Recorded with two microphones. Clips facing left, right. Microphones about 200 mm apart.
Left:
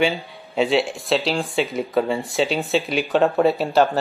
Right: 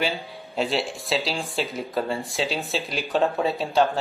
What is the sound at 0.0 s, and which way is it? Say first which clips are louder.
Speech: left 6 dB; centre (ahead or behind).